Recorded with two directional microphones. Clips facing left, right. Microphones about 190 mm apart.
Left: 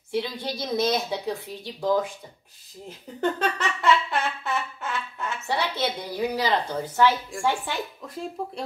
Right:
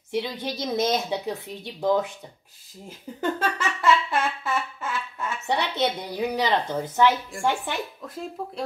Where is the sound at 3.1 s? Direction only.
5° right (ahead or behind).